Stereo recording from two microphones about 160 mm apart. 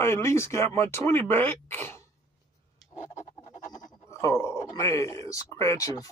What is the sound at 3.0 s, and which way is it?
Scratch, 50° left (ahead or behind).